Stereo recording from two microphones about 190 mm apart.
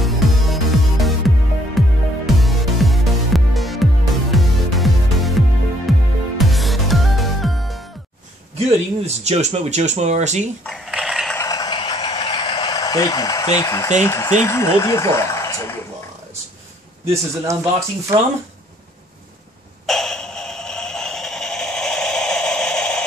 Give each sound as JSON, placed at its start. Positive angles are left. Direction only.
{"t": 0.0, "sound": "music", "side_deg": 0}
{"t": 8.5, "sound": "speech", "side_deg": -35}
{"t": 10.6, "sound": "dog", "side_deg": 0}
{"t": 11.3, "sound": "a sound", "side_deg": 20}
{"t": 14.0, "sound": "speech", "side_deg": 15}
{"t": 17.0, "sound": "speech", "side_deg": -15}
{"t": 19.9, "sound": "a sound", "side_deg": 5}